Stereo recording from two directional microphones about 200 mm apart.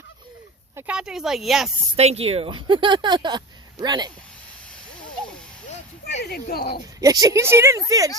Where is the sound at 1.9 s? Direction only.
30° right (ahead or behind).